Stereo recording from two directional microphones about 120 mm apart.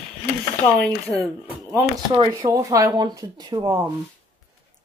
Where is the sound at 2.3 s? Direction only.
25° right (ahead or behind).